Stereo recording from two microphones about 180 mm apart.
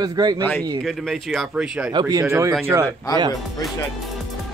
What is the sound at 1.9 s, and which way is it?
Speech, 20° right (ahead or behind).